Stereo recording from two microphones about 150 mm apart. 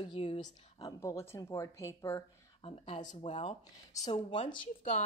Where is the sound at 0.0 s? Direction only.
35° left (ahead or behind).